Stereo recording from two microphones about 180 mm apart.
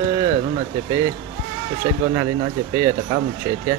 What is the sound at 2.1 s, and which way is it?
Speech, 20° right (ahead or behind).